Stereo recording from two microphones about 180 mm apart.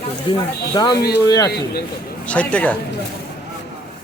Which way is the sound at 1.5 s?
65° left (ahead or behind).